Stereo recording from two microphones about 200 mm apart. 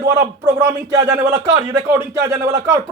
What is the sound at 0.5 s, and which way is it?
Speech, 15° right (ahead or behind).